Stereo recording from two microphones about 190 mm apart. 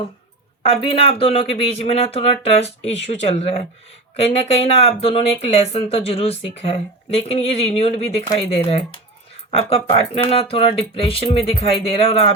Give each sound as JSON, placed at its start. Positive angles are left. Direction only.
{"t": 0.6, "sound": "speech", "side_deg": 30}